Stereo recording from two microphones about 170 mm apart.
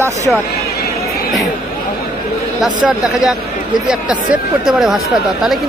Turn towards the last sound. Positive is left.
turn(degrees=-5)  # may be behind; listen again after turning